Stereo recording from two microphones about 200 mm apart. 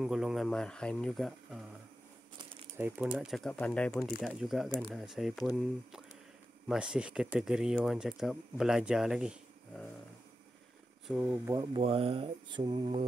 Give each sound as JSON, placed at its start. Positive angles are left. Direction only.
{"t": 0.0, "sound": "speech", "side_deg": 0}
{"t": 2.8, "sound": "speech", "side_deg": -5}
{"t": 11.1, "sound": "speech", "side_deg": -5}
{"t": 11.5, "sound": "mantra", "side_deg": -20}